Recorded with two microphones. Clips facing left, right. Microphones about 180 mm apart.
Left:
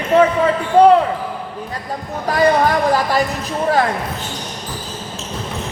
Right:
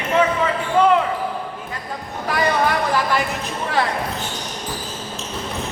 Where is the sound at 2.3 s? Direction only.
40° left (ahead or behind).